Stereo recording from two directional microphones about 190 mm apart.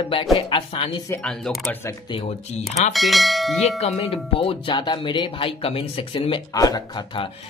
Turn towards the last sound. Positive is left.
turn(degrees=25)  # may be behind; listen again after turning